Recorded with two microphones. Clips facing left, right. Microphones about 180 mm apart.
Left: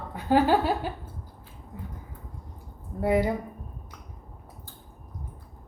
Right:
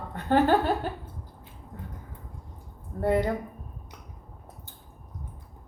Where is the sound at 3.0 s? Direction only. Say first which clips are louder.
Left 1 dB; 10° left (ahead or behind).